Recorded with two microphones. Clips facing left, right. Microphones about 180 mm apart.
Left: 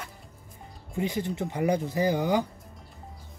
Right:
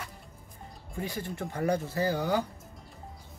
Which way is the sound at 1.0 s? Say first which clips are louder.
Left 6 dB; 20° left (ahead or behind).